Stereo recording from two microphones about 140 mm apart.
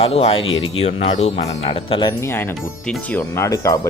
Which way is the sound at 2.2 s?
15° left (ahead or behind).